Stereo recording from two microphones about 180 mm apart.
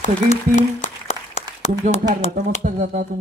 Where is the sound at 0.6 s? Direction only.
45° left (ahead or behind).